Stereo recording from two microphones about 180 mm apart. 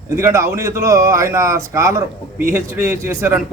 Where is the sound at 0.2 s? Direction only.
15° right (ahead or behind).